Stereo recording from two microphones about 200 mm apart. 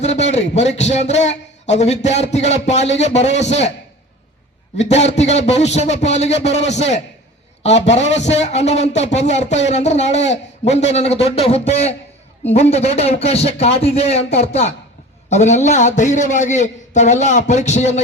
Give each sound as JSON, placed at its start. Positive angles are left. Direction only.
{"t": 0.0, "sound": "a man's voice", "side_deg": 35}
{"t": 4.8, "sound": "a man's voice", "side_deg": 35}